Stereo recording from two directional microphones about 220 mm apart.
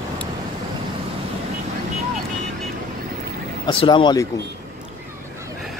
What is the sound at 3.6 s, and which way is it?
Speech, 20° left (ahead or behind).